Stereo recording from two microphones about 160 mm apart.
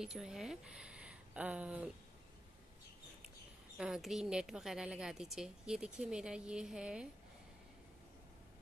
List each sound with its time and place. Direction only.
0.0 s speech: 5° right (ahead or behind)
3.7 s a woman's voice: 5° right (ahead or behind)